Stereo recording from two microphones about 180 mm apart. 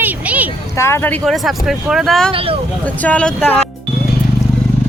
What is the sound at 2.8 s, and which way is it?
Speech, 10° left (ahead or behind).